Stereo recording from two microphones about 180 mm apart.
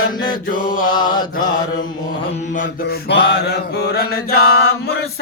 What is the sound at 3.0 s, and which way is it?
Mantra, 65° left (ahead or behind).